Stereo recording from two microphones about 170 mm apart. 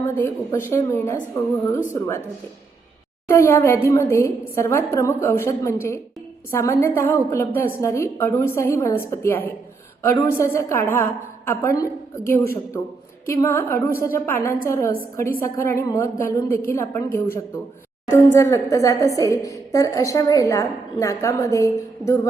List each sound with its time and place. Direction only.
0.0 s a woman's voice: 15° left (ahead or behind)
3.2 s a woman's voice: 15° left (ahead or behind)